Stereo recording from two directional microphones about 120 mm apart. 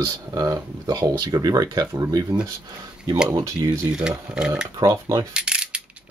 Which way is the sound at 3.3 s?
25° right (ahead or behind).